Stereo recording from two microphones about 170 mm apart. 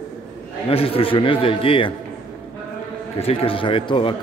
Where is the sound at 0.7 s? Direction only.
35° left (ahead or behind).